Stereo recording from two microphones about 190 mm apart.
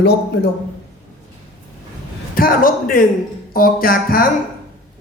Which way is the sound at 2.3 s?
50° left (ahead or behind).